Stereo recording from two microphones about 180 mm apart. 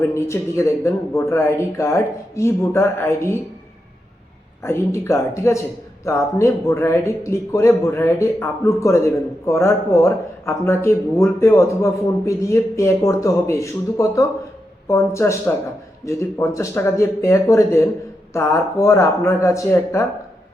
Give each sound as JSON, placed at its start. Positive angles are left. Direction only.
{"t": 0.0, "sound": "speech", "side_deg": 15}
{"t": 4.6, "sound": "speech", "side_deg": 15}